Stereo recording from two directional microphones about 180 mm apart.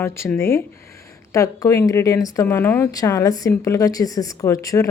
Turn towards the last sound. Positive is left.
turn(degrees=20)  # may be behind; listen again after turning